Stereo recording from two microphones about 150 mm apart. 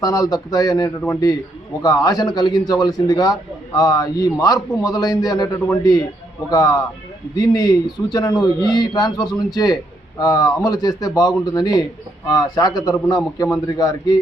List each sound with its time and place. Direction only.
0.0 s a man's voice: 25° left (ahead or behind)